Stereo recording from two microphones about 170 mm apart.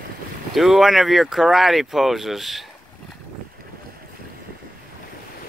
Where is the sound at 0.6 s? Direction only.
Centre (ahead or behind).